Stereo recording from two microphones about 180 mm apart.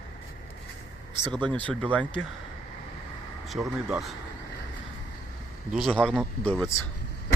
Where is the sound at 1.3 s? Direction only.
25° right (ahead or behind).